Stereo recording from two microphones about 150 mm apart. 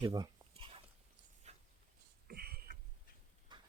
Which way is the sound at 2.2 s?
90° right.